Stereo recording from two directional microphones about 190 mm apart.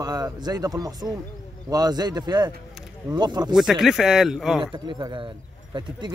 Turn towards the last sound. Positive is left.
turn(degrees=-25)  # may be behind; listen again after turning